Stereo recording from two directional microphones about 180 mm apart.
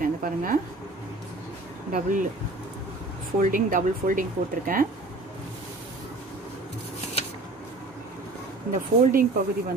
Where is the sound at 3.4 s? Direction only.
50° right (ahead or behind).